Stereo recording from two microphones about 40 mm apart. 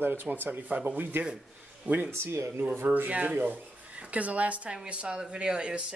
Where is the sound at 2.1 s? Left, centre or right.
Right.